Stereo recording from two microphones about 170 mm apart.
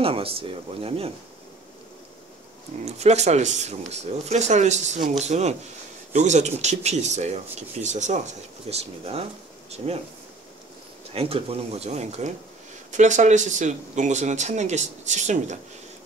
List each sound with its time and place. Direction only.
0.0 s speech: 35° right (ahead or behind)
2.8 s speech: 40° right (ahead or behind)
11.1 s speech: 35° right (ahead or behind)